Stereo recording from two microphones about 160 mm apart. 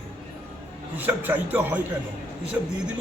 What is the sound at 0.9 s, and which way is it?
Speech, 10° right (ahead or behind).